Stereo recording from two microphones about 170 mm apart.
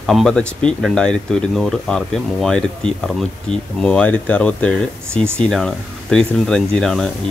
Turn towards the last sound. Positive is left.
turn(degrees=0)  # may be behind; listen again after turning